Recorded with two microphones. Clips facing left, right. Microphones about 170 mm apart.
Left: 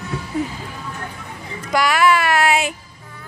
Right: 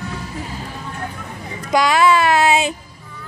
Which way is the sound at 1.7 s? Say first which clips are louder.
Right 2 dB; 20° right (ahead or behind).